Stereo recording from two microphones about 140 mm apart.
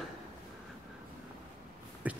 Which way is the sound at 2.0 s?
10° right (ahead or behind).